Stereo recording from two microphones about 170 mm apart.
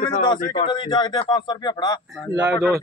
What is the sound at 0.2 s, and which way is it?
A man's voice, 25° left (ahead or behind).